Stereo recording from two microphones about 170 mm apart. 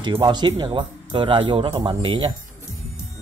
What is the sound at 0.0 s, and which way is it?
Speech, 25° right (ahead or behind).